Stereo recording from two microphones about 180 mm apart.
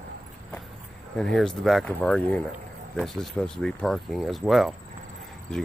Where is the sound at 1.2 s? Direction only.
5° left (ahead or behind).